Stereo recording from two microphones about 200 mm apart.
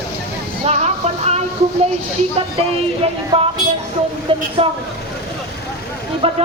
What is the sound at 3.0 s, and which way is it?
Speech, 30° right (ahead or behind).